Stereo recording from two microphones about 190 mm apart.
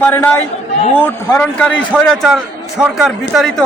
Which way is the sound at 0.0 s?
10° left (ahead or behind).